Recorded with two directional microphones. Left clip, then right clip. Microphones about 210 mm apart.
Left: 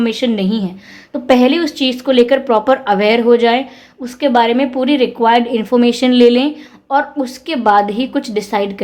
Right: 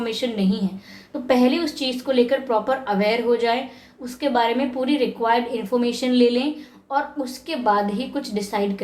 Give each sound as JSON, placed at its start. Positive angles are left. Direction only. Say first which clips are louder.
{"t": 0.0, "sound": "a woman's voice", "louder": "left 8 dB", "side_deg": 40}